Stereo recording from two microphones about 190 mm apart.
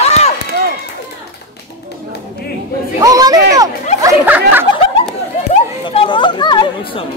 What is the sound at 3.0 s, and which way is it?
A child's voice, 20° right (ahead or behind).